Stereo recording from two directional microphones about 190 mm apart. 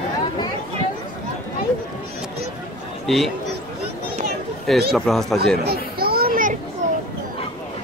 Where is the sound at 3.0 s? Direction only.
Centre (ahead or behind).